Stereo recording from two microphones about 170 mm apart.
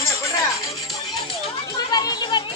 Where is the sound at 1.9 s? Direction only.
25° left (ahead or behind).